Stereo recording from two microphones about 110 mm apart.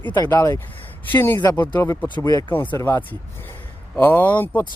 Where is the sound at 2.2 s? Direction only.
35° left (ahead or behind).